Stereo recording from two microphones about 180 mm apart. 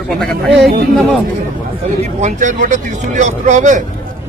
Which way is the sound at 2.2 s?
45° right (ahead or behind).